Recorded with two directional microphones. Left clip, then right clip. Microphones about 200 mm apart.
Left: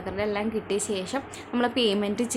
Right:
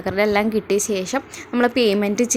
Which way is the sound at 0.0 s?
40° right (ahead or behind).